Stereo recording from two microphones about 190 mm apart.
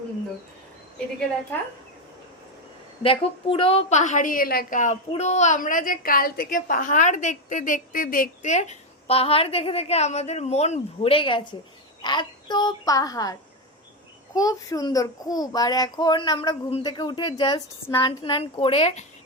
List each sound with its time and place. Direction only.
3.0 s a woman's voice: 30° left (ahead or behind)
14.3 s a child's voice: 20° left (ahead or behind)
18.0 s a child's voice: 30° left (ahead or behind)